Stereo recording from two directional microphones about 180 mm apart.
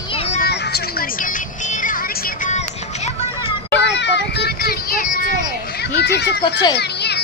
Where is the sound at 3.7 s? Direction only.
75° left (ahead or behind); by 5.3 s 50° left (ahead or behind).